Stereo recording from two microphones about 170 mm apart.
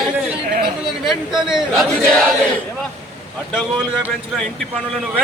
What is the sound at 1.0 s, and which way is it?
A man's voice, 5° right (ahead or behind).